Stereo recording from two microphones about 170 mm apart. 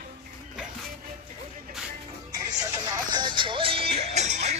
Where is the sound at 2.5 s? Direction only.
20° right (ahead or behind); by 4.5 s 40° right (ahead or behind).